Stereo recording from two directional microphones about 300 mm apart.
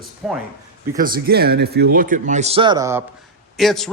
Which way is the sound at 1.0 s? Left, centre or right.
Right.